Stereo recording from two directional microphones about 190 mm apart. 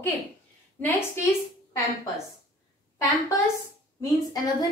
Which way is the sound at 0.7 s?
10° left (ahead or behind).